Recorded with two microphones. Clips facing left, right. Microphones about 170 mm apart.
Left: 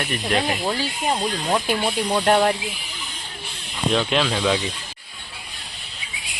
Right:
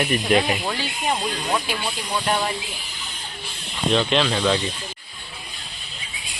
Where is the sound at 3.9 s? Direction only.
5° left (ahead or behind).